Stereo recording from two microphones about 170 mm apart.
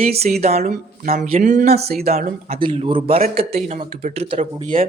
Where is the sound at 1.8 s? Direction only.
65° right (ahead or behind).